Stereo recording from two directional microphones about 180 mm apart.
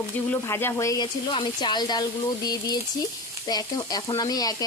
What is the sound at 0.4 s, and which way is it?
Speech, 15° left (ahead or behind).